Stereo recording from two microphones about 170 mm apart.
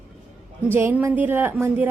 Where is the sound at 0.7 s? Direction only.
15° right (ahead or behind).